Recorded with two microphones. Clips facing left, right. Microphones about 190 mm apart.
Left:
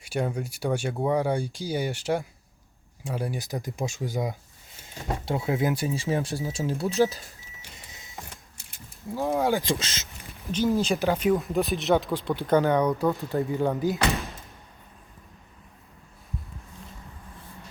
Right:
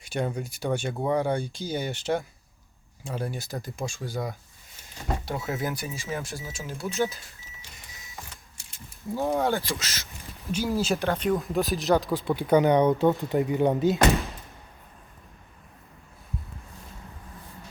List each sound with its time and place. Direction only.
0.0 s speech: 5° left (ahead or behind); by 7.2 s 35° left (ahead or behind)
7.9 s printer: 25° left (ahead or behind)
9.1 s speech: centre (ahead or behind)
9.6 s speech: 25° left (ahead or behind)
10.5 s speech: 5° right (ahead or behind); by 14.0 s 25° right (ahead or behind)